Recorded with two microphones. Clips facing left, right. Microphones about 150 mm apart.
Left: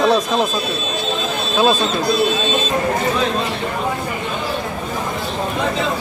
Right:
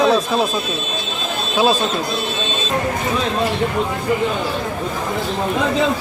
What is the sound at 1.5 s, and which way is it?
Speech, 10° right (ahead or behind).